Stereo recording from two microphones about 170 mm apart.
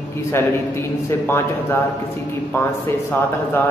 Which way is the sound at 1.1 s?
15° left (ahead or behind).